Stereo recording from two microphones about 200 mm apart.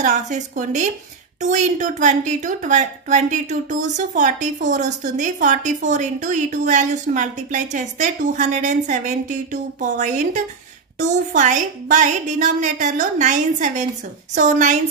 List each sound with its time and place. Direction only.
0.0 s a woman's voice: 35° right (ahead or behind)